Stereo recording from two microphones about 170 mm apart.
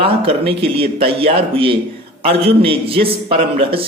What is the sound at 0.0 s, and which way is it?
Speech, 35° right (ahead or behind).